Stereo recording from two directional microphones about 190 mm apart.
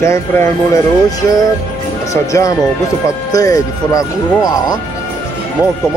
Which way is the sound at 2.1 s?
15° left (ahead or behind).